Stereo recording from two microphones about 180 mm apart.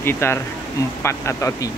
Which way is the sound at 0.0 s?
15° left (ahead or behind).